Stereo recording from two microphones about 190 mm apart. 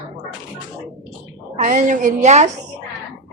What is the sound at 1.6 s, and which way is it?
Speech, 40° right (ahead or behind).